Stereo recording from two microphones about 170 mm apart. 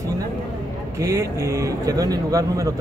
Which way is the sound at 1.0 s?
20° right (ahead or behind).